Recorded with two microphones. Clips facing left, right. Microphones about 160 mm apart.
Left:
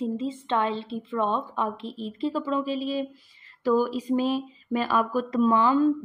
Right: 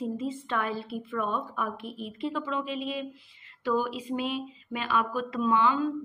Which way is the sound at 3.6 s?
40° left (ahead or behind).